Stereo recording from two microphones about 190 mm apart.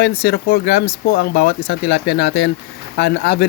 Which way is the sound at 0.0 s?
60° left (ahead or behind).